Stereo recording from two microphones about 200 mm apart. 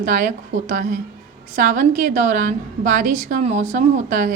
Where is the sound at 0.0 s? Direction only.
40° right (ahead or behind).